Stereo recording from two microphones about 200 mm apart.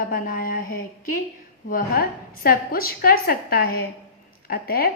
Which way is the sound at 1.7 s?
45° left (ahead or behind).